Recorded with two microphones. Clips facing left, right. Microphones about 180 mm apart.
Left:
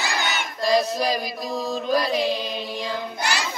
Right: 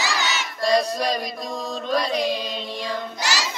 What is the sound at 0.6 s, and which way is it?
Child singing, 5° left (ahead or behind).